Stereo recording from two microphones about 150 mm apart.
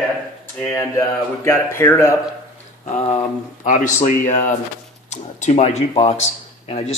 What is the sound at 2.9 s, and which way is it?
Speech, 55° left (ahead or behind).